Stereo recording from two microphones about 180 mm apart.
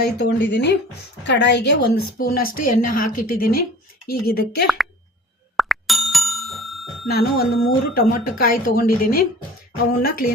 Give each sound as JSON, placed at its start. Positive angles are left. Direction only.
{"t": 0.2, "sound": "a woman's voice", "side_deg": 70}
{"t": 4.6, "sound": "speech", "side_deg": 0}
{"t": 5.5, "sound": "bicycle bell", "side_deg": 0}
{"t": 7.1, "sound": "a woman's voice", "side_deg": 55}